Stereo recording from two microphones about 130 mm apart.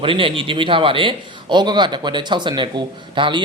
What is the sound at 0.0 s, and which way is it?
A man's voice, 40° right (ahead or behind).